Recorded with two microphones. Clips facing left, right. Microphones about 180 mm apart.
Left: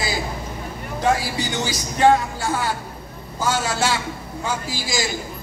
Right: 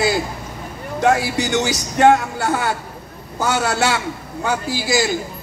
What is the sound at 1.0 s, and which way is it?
A man's voice, 75° right (ahead or behind).